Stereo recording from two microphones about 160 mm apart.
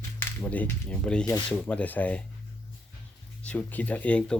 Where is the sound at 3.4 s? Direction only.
10° left (ahead or behind).